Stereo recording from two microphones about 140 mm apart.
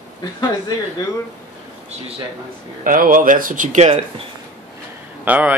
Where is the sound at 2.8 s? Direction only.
80° right; by 3.9 s 60° right (ahead or behind).